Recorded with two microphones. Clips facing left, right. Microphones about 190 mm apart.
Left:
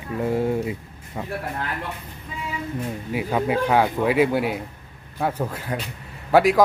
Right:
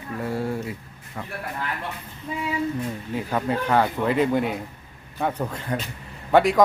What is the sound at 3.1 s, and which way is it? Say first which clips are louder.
Speech: left 3 dB; 10° left (ahead or behind).